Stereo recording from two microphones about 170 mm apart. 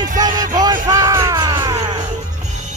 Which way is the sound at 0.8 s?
20° right (ahead or behind).